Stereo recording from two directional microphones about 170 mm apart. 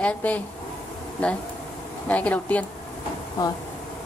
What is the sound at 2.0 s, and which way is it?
Speech, 10° left (ahead or behind).